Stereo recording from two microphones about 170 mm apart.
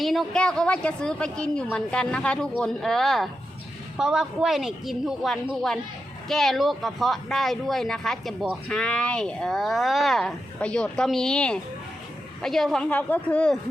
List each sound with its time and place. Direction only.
0.0 s speech: centre (ahead or behind)